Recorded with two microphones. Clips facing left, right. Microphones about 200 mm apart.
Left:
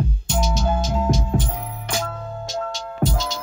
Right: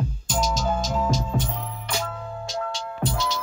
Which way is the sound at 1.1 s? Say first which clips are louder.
Left 3 dB; 60° left (ahead or behind).